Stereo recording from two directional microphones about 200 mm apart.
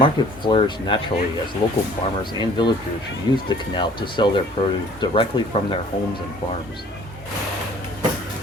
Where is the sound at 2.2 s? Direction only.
20° left (ahead or behind).